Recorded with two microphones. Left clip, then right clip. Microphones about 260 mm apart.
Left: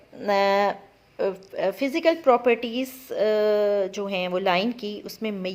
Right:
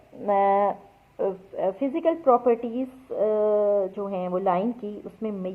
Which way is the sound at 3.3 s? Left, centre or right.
Left.